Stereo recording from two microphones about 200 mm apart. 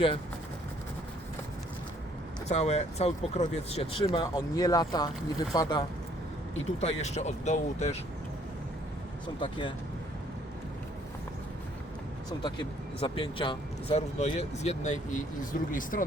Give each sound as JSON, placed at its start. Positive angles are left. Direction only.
{"t": 2.5, "sound": "speech", "side_deg": 30}
{"t": 6.7, "sound": "speech", "side_deg": 35}
{"t": 9.2, "sound": "speech", "side_deg": 25}
{"t": 12.4, "sound": "speech", "side_deg": 25}